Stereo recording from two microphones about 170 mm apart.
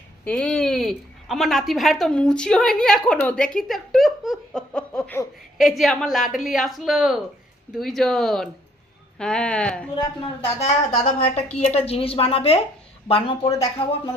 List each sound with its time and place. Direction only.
0.3 s a woman's voice: 5° left (ahead or behind)
10.4 s a woman's voice: 35° left (ahead or behind)